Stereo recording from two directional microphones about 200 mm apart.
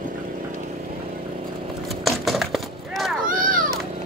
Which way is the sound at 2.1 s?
Centre (ahead or behind).